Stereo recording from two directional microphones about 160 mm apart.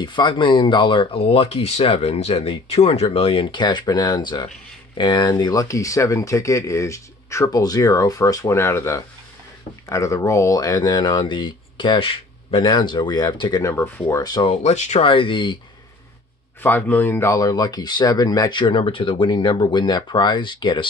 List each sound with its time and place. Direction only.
0.0 s speech: 30° left (ahead or behind)
14.5 s speech: 45° left (ahead or behind)
16.6 s speech: 10° left (ahead or behind); by 20.9 s 30° left (ahead or behind)